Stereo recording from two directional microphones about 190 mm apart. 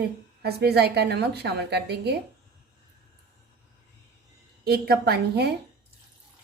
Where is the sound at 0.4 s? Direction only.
55° right (ahead or behind).